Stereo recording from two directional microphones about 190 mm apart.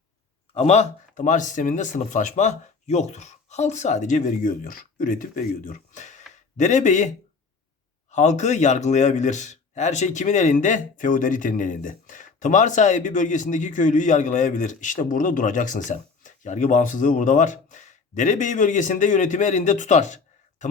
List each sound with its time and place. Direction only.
0.5 s speech: 35° left (ahead or behind)
8.1 s speech: 40° left (ahead or behind)